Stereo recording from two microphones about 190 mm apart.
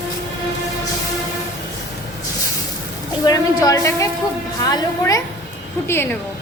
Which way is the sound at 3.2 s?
20° left (ahead or behind).